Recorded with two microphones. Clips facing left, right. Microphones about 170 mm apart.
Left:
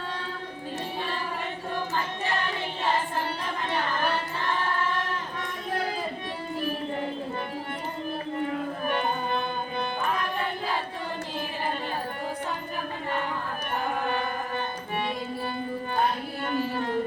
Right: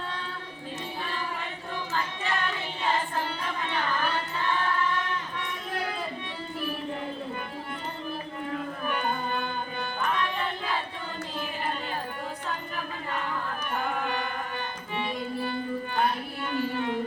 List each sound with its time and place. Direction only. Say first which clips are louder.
16.5 s carnatic music: even; 40° left (ahead or behind)